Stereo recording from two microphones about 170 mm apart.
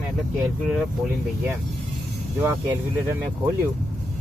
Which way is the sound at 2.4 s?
10° right (ahead or behind).